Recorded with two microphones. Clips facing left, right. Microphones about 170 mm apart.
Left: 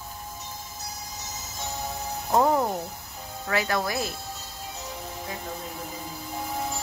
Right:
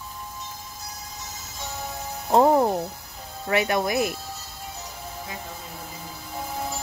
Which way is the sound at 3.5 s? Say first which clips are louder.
Right 4 dB; 20° right (ahead or behind).